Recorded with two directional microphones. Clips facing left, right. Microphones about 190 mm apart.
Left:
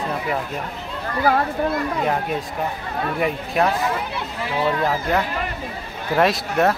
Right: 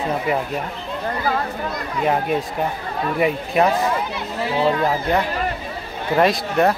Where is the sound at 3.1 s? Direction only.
5° right (ahead or behind).